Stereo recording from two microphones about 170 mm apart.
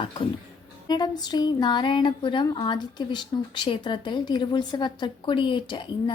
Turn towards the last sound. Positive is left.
turn(degrees=30)  # may be behind; listen again after turning